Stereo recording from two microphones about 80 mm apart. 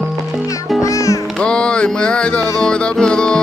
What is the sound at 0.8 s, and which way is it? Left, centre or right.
Music, left.